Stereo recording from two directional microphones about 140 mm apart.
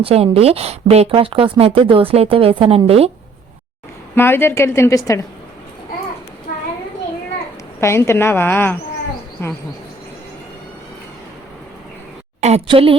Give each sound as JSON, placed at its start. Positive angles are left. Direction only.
{"t": 0.0, "sound": "speech", "side_deg": -45}
{"t": 4.1, "sound": "a woman's voice", "side_deg": 15}
{"t": 7.8, "sound": "a woman's voice", "side_deg": 20}
{"t": 12.4, "sound": "a woman's voice", "side_deg": -50}
{"t": 12.6, "sound": "a woman's voice", "side_deg": -40}